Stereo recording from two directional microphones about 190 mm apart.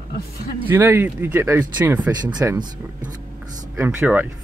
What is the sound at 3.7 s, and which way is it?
Speech, 10° right (ahead or behind).